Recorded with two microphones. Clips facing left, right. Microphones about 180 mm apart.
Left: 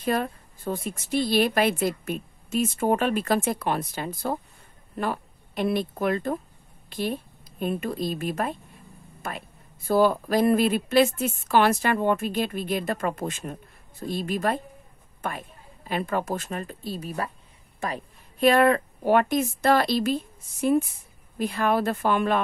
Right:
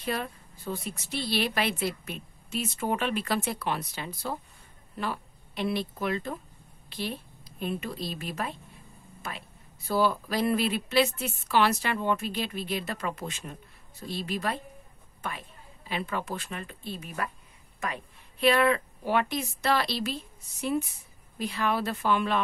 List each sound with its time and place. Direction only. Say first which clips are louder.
0.0 s a woman's voice: left 6 dB; 50° left (ahead or behind)